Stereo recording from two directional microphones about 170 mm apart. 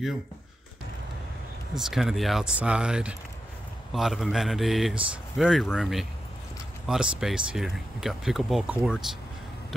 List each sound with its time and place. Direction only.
1.8 s speech: centre (ahead or behind)